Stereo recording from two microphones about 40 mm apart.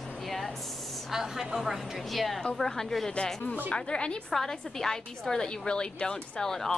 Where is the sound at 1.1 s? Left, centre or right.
Centre.